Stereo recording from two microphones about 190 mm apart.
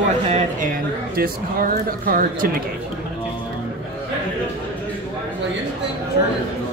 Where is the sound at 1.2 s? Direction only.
50° right (ahead or behind).